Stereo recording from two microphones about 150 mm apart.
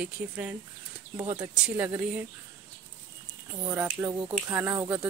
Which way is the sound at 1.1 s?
30° right (ahead or behind).